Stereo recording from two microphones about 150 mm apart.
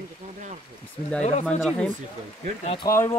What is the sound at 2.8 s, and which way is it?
Speech, 80° left.